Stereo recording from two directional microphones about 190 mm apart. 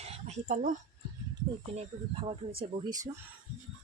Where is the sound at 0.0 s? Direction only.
35° right (ahead or behind).